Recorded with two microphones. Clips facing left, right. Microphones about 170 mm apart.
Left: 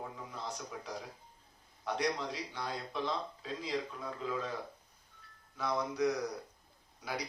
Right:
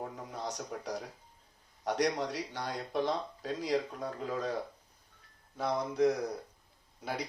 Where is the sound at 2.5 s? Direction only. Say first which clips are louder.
Right 3 dB; 45° right (ahead or behind).